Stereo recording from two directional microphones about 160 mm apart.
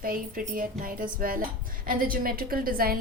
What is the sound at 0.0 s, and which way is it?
A woman's voice, 60° right (ahead or behind).